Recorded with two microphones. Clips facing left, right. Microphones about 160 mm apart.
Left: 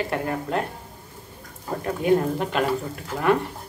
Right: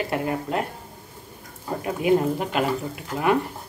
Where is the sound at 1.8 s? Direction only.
5° right (ahead or behind).